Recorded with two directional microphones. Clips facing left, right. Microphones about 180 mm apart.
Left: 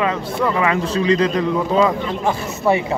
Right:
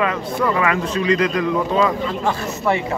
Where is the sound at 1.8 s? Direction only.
20° left (ahead or behind).